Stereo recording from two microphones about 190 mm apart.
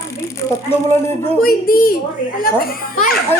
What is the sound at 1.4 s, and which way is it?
Speech, 50° left (ahead or behind).